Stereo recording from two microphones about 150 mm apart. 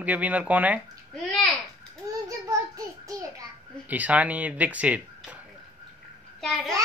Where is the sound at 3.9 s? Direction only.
10° right (ahead or behind).